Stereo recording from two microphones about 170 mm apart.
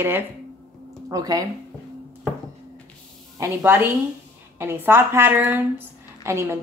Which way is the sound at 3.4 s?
15° right (ahead or behind).